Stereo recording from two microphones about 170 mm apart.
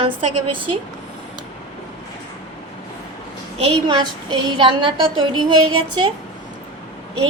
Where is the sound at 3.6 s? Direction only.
30° right (ahead or behind).